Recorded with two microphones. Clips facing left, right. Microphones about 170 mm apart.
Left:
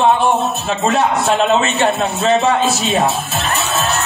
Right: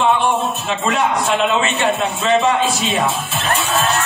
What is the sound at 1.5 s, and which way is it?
Speech, 40° left (ahead or behind).